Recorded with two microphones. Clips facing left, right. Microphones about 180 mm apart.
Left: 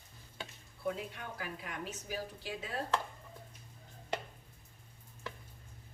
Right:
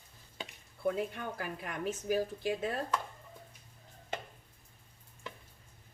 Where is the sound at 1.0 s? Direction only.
50° right (ahead or behind).